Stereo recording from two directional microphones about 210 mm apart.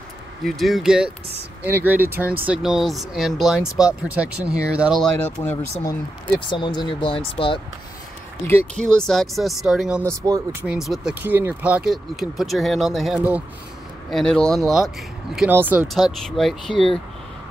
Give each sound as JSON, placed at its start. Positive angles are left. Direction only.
{"t": 0.5, "sound": "speech", "side_deg": 0}
{"t": 6.5, "sound": "speech", "side_deg": 20}
{"t": 8.8, "sound": "speech", "side_deg": 0}